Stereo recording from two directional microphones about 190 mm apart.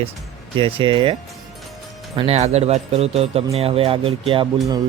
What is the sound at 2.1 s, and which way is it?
Speech, 35° right (ahead or behind).